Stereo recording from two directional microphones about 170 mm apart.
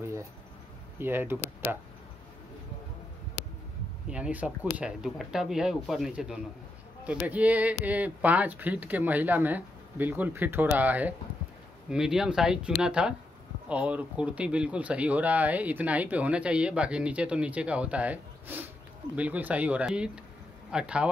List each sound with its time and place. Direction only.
0.0 s a sound: 15° right (ahead or behind)
0.9 s speech: 15° right (ahead or behind)
4.1 s speech: 10° right (ahead or behind)